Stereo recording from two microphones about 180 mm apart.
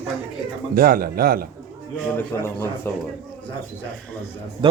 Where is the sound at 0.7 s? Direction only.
55° right (ahead or behind).